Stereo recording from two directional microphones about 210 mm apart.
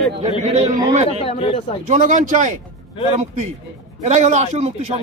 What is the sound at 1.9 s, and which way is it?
Speech, 35° right (ahead or behind).